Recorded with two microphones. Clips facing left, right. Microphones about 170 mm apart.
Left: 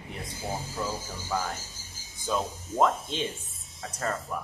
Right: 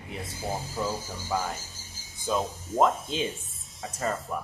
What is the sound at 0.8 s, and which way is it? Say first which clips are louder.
Speech: right 3 dB; 15° right (ahead or behind).